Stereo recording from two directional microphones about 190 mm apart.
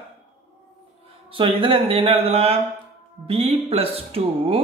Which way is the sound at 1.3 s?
25° right (ahead or behind).